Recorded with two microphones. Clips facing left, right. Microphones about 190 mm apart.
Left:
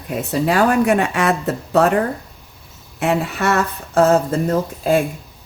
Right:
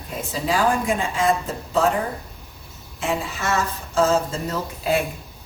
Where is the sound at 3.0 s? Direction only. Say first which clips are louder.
Left 7 dB; 65° left (ahead or behind); by 5.0 s 50° left (ahead or behind).